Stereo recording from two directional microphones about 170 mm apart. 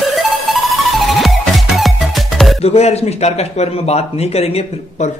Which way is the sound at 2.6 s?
40° left (ahead or behind).